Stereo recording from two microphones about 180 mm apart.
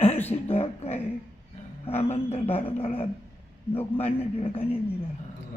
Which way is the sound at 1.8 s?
35° left (ahead or behind).